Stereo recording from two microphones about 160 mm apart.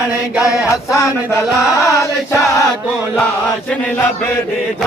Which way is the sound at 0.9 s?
20° left (ahead or behind).